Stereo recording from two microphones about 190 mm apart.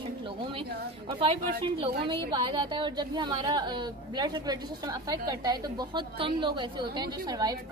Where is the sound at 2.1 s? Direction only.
25° right (ahead or behind).